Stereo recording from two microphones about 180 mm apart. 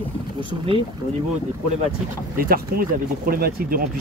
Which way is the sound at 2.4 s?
55° right (ahead or behind).